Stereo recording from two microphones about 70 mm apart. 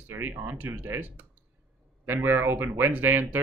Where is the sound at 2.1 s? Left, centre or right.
Right.